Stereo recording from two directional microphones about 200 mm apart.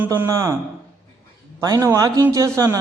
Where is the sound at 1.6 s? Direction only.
20° right (ahead or behind).